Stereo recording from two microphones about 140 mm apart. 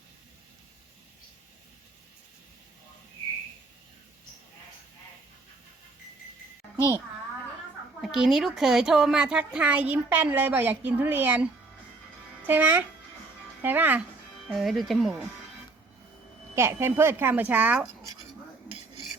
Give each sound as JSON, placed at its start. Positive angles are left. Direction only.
{"t": 8.0, "sound": "a woman's voice", "side_deg": 0}
{"t": 12.5, "sound": "a woman's voice", "side_deg": -15}
{"t": 14.5, "sound": "speech", "side_deg": 0}
{"t": 16.6, "sound": "a woman's voice", "side_deg": -15}